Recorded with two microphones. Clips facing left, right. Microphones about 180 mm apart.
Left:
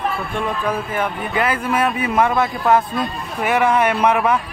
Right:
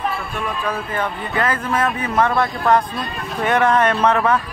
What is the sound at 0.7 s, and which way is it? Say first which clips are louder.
A man's voice: left 2 dB; 15° left (ahead or behind).